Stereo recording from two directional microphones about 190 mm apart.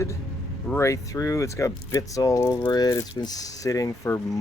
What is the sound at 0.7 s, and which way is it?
Speech, 15° left (ahead or behind).